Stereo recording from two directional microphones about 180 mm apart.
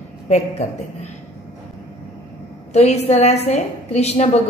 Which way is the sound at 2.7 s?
35° left (ahead or behind).